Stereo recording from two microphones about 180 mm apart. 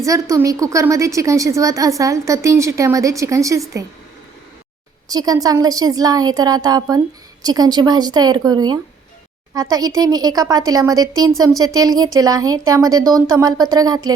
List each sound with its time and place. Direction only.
0.0 s a woman's voice: 15° right (ahead or behind)
5.0 s a woman's voice: 20° right (ahead or behind)